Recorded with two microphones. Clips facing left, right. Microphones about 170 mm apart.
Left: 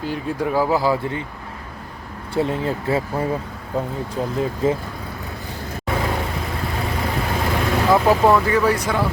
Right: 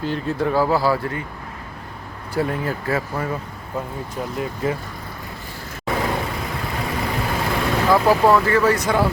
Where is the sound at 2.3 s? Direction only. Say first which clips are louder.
Left 2 dB; 25° left (ahead or behind).